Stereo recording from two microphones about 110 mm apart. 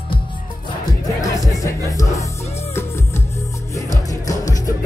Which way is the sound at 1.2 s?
30° left (ahead or behind).